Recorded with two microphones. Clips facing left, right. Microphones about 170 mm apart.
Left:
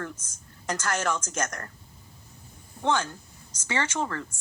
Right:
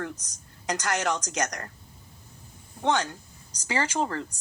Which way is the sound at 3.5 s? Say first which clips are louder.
Right 2 dB; 35° right (ahead or behind).